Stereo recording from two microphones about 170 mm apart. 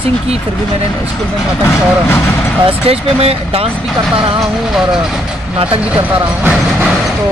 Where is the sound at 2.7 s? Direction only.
35° right (ahead or behind).